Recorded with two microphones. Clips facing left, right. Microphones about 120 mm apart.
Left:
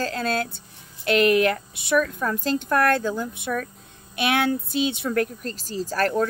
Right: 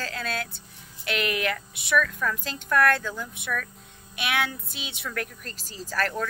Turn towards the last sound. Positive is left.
turn(degrees=35)  # may be behind; listen again after turning